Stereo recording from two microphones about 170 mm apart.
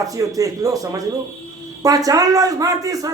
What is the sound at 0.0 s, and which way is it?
A man's voice, 20° right (ahead or behind).